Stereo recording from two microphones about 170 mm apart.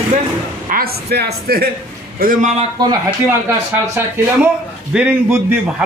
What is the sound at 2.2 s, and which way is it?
Speech, 55° right (ahead or behind).